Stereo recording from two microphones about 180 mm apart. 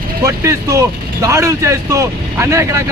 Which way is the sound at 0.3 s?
15° right (ahead or behind).